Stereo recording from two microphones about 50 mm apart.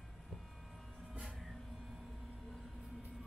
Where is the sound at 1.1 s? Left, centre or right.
Centre.